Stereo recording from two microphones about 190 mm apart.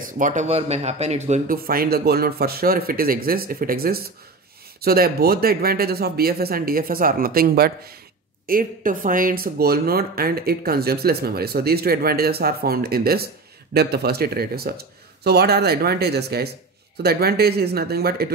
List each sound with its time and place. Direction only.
0.0 s speech: 40° right (ahead or behind)